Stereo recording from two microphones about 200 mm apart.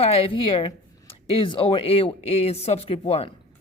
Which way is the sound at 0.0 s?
30° left (ahead or behind).